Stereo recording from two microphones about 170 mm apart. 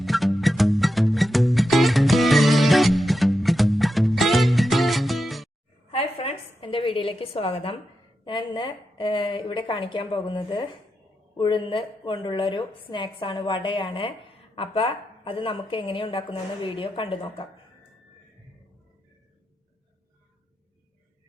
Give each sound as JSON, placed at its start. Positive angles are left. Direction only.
{"t": 0.0, "sound": "music", "side_deg": 0}
{"t": 5.9, "sound": "a sound", "side_deg": 35}
{"t": 8.2, "sound": "a woman's voice", "side_deg": 30}